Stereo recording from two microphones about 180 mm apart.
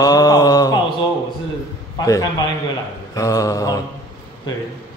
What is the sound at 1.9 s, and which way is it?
A man's voice, 20° left (ahead or behind).